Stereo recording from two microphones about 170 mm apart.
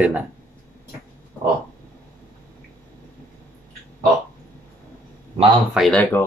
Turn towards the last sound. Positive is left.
turn(degrees=5)  # may be behind; listen again after turning